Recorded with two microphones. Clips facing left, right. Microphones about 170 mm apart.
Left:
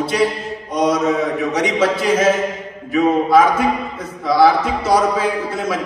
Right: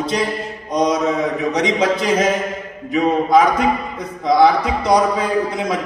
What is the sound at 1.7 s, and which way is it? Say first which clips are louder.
Speech: left 1 dB; 15° right (ahead or behind).